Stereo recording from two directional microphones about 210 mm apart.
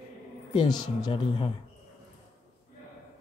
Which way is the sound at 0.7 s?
20° left (ahead or behind).